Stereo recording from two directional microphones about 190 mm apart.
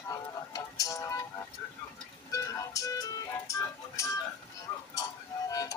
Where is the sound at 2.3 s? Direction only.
15° left (ahead or behind).